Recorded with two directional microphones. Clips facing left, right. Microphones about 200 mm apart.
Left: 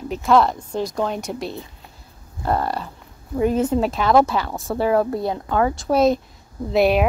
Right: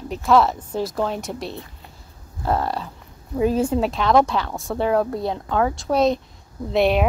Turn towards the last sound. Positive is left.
turn(degrees=0)  # may be behind; listen again after turning